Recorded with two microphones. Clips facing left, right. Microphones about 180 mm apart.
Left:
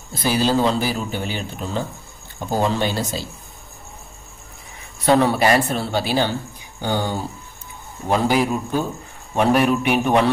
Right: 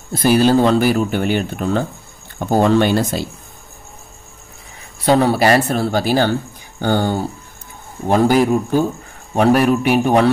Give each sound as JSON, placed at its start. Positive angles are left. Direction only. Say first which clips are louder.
{"t": 0.1, "sound": "speech", "louder": "right 6 dB", "side_deg": -55}
{"t": 5.0, "sound": "a man's voice", "louder": "right 3 dB", "side_deg": -35}